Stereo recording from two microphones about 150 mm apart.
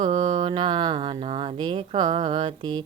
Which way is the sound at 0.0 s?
30° right (ahead or behind).